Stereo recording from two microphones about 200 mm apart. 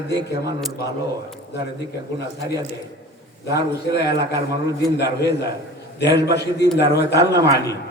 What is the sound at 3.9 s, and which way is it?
A man's voice, 55° left (ahead or behind).